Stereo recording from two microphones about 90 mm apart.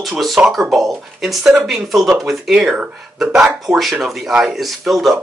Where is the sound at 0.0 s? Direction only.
Centre (ahead or behind).